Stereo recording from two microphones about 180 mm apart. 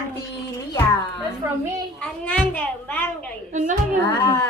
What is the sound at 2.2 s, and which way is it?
A woman's voice, 10° left (ahead or behind).